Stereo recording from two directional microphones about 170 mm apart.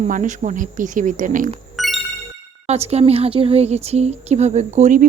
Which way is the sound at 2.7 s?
40° right (ahead or behind).